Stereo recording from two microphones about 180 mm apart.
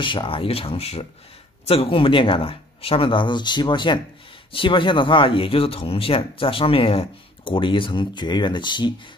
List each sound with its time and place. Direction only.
0.0 s speech: 25° left (ahead or behind)